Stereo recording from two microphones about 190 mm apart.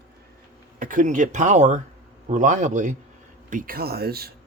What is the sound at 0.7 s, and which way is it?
A man's voice, 45° right (ahead or behind).